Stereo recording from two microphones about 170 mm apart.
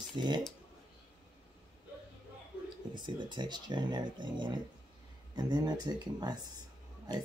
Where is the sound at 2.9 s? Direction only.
25° right (ahead or behind).